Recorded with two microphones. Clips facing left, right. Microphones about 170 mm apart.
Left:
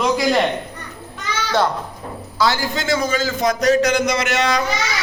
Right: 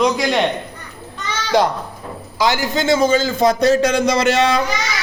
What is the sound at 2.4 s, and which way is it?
Speech, 20° right (ahead or behind).